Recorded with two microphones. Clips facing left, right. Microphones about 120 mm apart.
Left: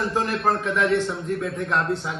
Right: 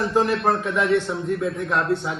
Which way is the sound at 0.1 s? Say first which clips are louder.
Right 3 dB; centre (ahead or behind).